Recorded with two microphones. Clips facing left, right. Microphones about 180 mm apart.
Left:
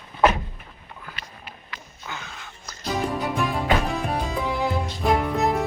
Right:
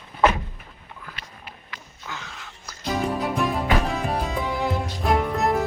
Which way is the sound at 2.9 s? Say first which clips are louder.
Right 1 dB; centre (ahead or behind).